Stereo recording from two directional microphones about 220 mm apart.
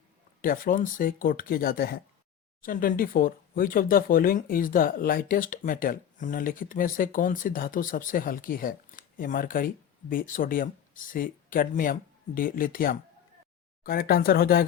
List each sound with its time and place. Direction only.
0.4 s speech: 40° left (ahead or behind)